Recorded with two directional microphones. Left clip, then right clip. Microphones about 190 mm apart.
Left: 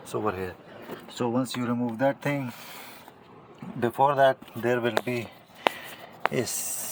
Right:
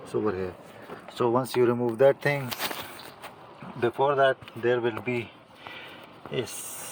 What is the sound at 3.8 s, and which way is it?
Speech, 20° left (ahead or behind).